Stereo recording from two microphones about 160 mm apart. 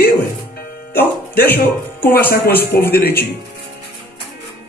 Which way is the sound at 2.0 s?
70° left (ahead or behind).